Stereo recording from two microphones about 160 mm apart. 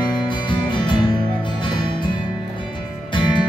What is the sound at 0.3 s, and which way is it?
Music, 30° left (ahead or behind).